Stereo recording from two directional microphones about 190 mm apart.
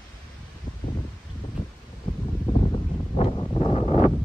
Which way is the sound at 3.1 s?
25° left (ahead or behind).